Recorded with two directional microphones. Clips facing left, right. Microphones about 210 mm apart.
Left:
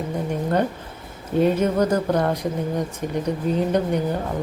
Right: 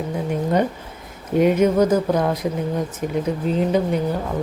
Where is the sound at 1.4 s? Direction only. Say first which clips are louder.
Right 3 dB; 10° right (ahead or behind).